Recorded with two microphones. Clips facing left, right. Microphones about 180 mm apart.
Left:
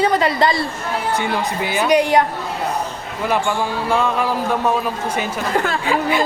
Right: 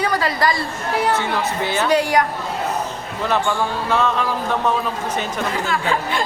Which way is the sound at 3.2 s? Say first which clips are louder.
Left 1 dB; 10° left (ahead or behind).